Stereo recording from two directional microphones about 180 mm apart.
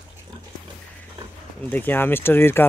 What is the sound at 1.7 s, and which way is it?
Speech, 10° left (ahead or behind).